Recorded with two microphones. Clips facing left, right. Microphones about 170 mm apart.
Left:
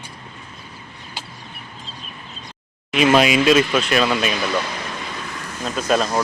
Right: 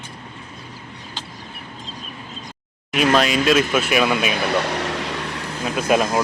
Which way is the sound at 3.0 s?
5° left (ahead or behind).